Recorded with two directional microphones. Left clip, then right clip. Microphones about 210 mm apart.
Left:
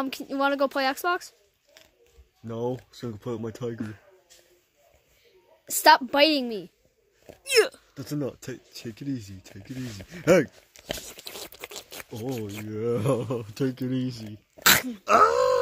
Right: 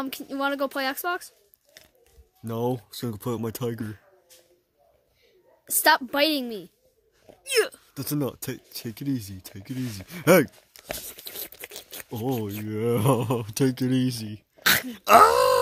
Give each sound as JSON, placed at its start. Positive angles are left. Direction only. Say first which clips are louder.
{"t": 0.0, "sound": "speech", "louder": "left 2 dB", "side_deg": 5}
{"t": 2.4, "sound": "speech", "louder": "right 3 dB", "side_deg": -50}
{"t": 5.7, "sound": "speech", "louder": "left 3 dB", "side_deg": 5}
{"t": 7.9, "sound": "speech", "louder": "right 3 dB", "side_deg": -50}
{"t": 10.9, "sound": "a sound", "louder": "left 1 dB", "side_deg": 5}
{"t": 12.3, "sound": "speech", "louder": "right 4 dB", "side_deg": 5}
{"t": 12.6, "sound": "speech", "louder": "right 2 dB", "side_deg": -55}
{"t": 14.6, "sound": "speech", "louder": "left 2 dB", "side_deg": 10}
{"t": 14.9, "sound": "throat clearing", "louder": "right 4 dB", "side_deg": -50}